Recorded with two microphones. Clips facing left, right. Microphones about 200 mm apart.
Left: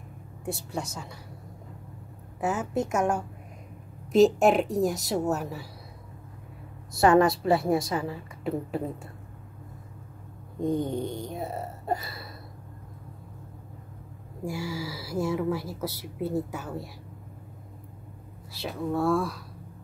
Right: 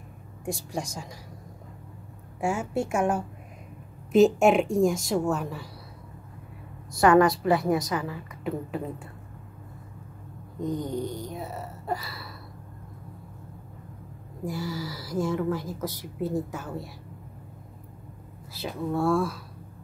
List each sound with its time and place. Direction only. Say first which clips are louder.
0.5 s a woman's voice: right 1 dB; 15° right (ahead or behind)
2.4 s a woman's voice: even; 10° right (ahead or behind); by 5.7 s 5° left (ahead or behind)
7.0 s a woman's voice: right 1 dB; 25° left (ahead or behind)
10.7 s a woman's voice: left 2 dB; 25° left (ahead or behind)
14.4 s speech: even; 10° left (ahead or behind)
18.5 s a woman's voice: even; centre (ahead or behind)